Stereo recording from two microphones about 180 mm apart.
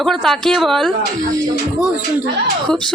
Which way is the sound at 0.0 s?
Centre (ahead or behind).